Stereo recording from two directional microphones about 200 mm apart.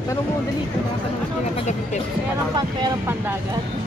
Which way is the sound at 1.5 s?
35° left (ahead or behind).